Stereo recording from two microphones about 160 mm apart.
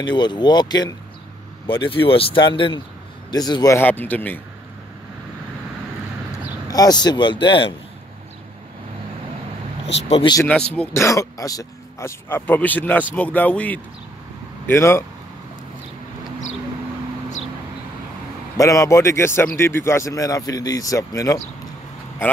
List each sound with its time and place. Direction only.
0.0 s speech: 25° left (ahead or behind); by 4.4 s 10° left (ahead or behind)
6.7 s speech: 25° left (ahead or behind)
10.0 s speech: 35° left (ahead or behind)
10.5 s speech: 5° left (ahead or behind)
18.6 s speech: 20° left (ahead or behind)